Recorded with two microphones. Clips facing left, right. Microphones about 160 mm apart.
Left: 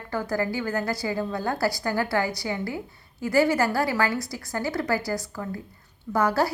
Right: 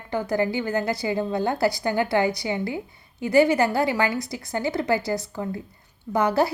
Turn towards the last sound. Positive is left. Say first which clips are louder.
# right 2 dB
turn(degrees=-20)  # may be behind; listen again after turning